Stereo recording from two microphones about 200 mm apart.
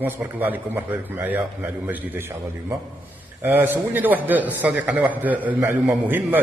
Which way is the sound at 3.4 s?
10° right (ahead or behind).